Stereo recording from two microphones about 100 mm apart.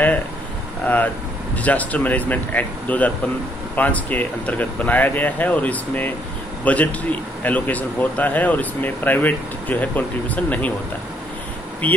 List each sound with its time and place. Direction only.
0.8 s a man's voice: 15° left (ahead or behind)
11.8 s a man's voice: 15° left (ahead or behind)